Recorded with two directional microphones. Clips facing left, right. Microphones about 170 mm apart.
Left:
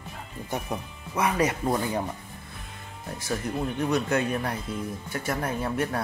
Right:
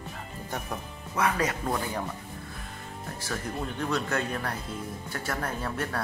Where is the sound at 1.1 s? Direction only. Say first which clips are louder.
Left 2 dB; 20° left (ahead or behind).